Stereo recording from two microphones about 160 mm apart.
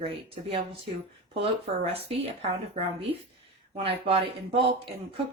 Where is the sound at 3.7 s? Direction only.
35° right (ahead or behind).